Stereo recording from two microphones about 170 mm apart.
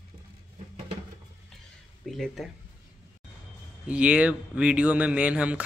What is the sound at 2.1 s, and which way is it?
Speech, centre (ahead or behind).